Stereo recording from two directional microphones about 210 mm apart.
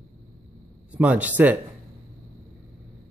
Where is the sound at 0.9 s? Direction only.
5° right (ahead or behind).